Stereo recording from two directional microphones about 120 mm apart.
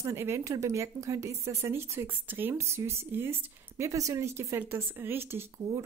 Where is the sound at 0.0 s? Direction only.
20° right (ahead or behind).